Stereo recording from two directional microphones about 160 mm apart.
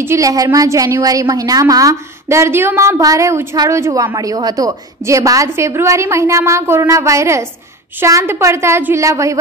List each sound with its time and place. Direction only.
0.0 s a woman's voice: 20° right (ahead or behind)